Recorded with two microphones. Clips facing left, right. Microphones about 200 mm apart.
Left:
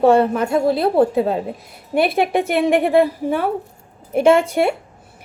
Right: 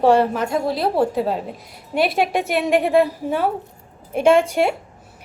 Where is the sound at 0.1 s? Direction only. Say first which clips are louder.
Left 2 dB; 55° left (ahead or behind).